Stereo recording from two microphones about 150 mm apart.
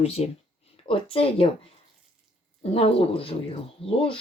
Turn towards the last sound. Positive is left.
turn(degrees=40)  # may be behind; listen again after turning